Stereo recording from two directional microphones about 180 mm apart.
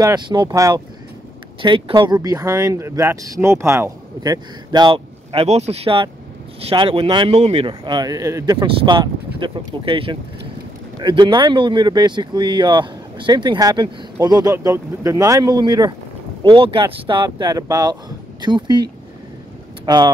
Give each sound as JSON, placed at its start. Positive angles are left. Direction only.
{"t": 0.0, "sound": "speech", "side_deg": -25}
{"t": 19.9, "sound": "speech", "side_deg": -25}